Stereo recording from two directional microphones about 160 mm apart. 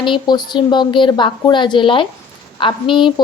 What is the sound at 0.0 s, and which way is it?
A woman's voice, 30° left (ahead or behind).